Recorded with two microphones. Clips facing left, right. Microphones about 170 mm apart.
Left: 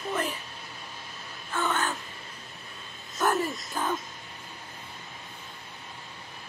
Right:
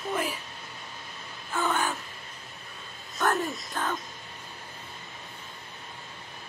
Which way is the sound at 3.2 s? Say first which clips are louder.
Left 1 dB; 5° left (ahead or behind).